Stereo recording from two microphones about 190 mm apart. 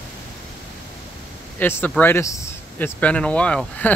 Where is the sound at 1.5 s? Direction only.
10° left (ahead or behind).